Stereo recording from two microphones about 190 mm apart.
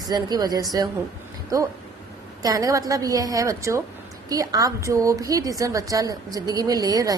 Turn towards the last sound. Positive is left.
turn(degrees=-20)  # may be behind; listen again after turning